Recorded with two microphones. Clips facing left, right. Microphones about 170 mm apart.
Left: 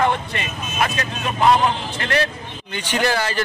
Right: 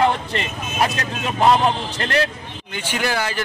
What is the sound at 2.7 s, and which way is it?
Speech, 10° right (ahead or behind).